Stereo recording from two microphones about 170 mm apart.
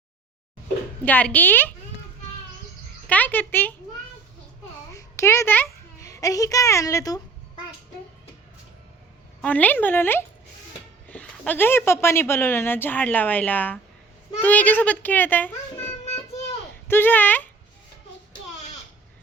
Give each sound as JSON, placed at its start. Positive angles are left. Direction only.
{"t": 1.0, "sound": "a woman's voice", "side_deg": 10}
{"t": 3.1, "sound": "a woman's voice", "side_deg": 10}
{"t": 4.9, "sound": "a sound", "side_deg": 15}
{"t": 9.4, "sound": "a woman's voice", "side_deg": 10}
{"t": 16.9, "sound": "a woman's voice", "side_deg": 10}